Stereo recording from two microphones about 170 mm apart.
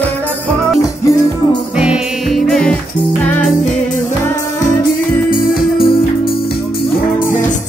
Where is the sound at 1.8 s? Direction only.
Centre (ahead or behind).